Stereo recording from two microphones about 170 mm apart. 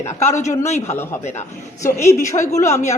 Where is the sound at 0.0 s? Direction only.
45° left (ahead or behind).